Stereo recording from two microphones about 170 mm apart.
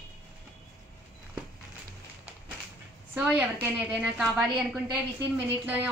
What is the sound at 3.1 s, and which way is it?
A woman's voice, 10° right (ahead or behind).